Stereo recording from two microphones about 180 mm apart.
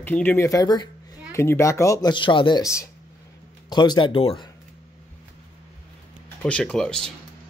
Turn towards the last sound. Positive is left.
turn(degrees=5)  # may be behind; listen again after turning